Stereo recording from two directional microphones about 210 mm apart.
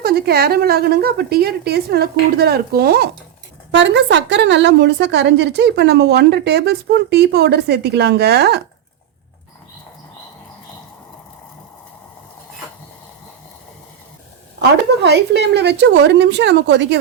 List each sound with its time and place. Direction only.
0.0 s a woman's voice: 50° right (ahead or behind)
14.6 s a woman's voice: 50° right (ahead or behind)